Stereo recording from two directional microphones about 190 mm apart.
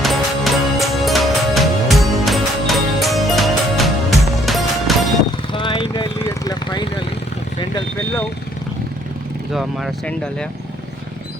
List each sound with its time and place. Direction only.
0.0 s music: centre (ahead or behind)
5.5 s vehicle: 25° left (ahead or behind)
6.1 s vehicle: 15° left (ahead or behind)
9.5 s speech: centre (ahead or behind)